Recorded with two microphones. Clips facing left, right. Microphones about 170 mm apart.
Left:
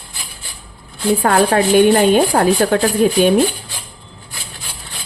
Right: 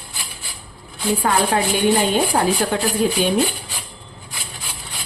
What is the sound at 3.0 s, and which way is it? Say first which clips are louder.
Speech: left 4 dB; 55° left (ahead or behind).